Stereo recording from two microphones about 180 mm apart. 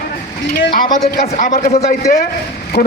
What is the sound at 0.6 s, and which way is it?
A man's voice, 55° left (ahead or behind).